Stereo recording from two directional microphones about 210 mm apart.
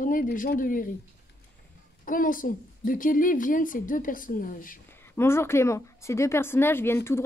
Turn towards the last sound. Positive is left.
turn(degrees=10)  # may be behind; listen again after turning